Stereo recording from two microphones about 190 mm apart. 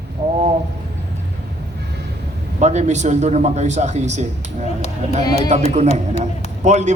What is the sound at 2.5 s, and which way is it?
A man's voice, 35° right (ahead or behind).